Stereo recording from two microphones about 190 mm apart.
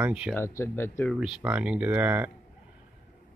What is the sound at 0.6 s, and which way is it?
Speech, 10° left (ahead or behind).